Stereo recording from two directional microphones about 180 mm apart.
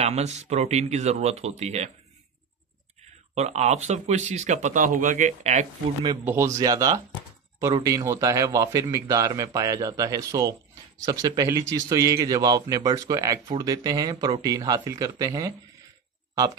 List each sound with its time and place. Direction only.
0.0 s speech: 40° right (ahead or behind)
3.3 s speech: 40° right (ahead or behind)
6.2 s a man's voice: 15° right (ahead or behind)